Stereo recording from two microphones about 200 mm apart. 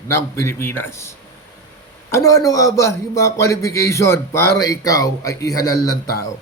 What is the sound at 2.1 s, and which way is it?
A man's voice, 15° left (ahead or behind).